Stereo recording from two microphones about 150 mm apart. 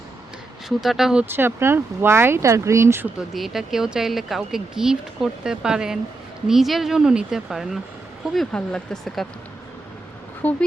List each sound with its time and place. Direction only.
0.8 s speech: 5° right (ahead or behind)
1.2 s speech: 15° right (ahead or behind)
3.3 s speech: centre (ahead or behind)
10.4 s speech: 10° left (ahead or behind)